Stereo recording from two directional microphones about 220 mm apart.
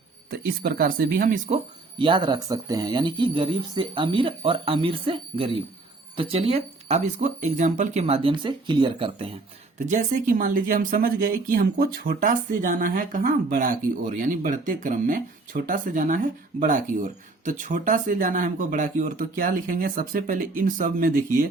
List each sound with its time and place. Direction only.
0.3 s speech: 45° right (ahead or behind)
2.0 s speech: 20° right (ahead or behind); by 21.1 s 40° right (ahead or behind)